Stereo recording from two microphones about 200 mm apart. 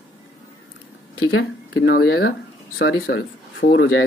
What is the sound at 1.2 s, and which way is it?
Speech, 90° left.